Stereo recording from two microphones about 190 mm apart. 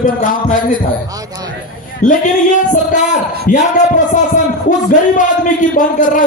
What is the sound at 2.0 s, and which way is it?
A man's voice, 40° left (ahead or behind).